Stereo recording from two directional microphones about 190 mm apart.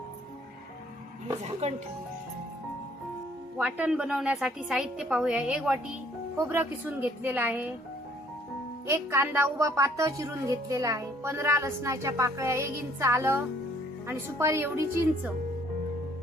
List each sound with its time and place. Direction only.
1.6 s speech: 35° right (ahead or behind)
3.6 s a woman's voice: 5° right (ahead or behind)
8.9 s a woman's voice: 10° right (ahead or behind)